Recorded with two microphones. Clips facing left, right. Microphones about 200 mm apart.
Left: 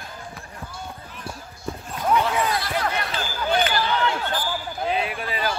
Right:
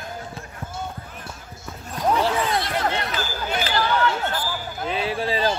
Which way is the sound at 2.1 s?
30° right (ahead or behind).